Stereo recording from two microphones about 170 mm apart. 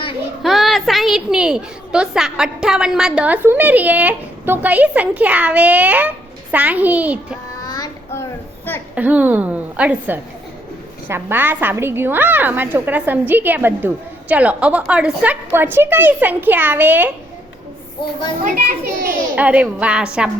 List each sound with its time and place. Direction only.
0.4 s a woman's voice: centre (ahead or behind)
7.6 s child singing: 20° left (ahead or behind)
9.0 s a woman's voice: 10° right (ahead or behind)
18.4 s a child's voice: 55° right (ahead or behind)
19.4 s a woman's voice: 10° right (ahead or behind)